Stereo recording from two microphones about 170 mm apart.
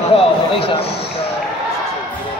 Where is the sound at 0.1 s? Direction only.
35° left (ahead or behind).